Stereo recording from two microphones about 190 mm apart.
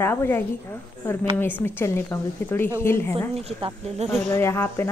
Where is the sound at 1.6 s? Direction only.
15° left (ahead or behind).